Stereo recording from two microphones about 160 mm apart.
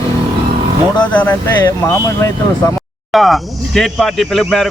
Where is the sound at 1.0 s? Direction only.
10° left (ahead or behind).